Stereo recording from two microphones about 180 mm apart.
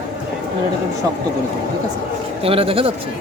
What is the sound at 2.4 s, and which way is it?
Speech, 30° right (ahead or behind).